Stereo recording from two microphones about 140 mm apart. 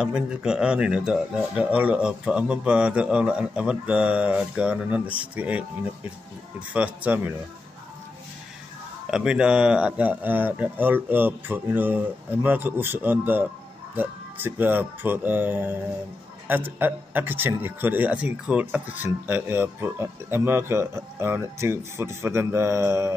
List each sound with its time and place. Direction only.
0.0 s speech: 5° right (ahead or behind)
9.1 s speech: 5° right (ahead or behind)